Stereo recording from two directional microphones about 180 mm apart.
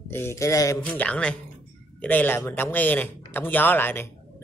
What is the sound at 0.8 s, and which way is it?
A man's voice, 5° left (ahead or behind).